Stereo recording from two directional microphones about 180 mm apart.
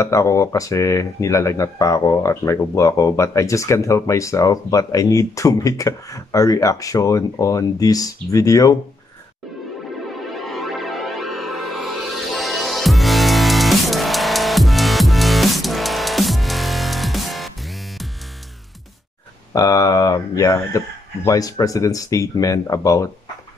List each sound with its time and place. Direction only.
0.0 s speech: 15° left (ahead or behind)
10.1 s music: centre (ahead or behind)
19.5 s speech: 20° left (ahead or behind)